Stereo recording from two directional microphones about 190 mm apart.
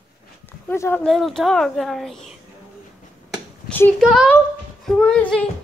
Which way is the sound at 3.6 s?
10° left (ahead or behind).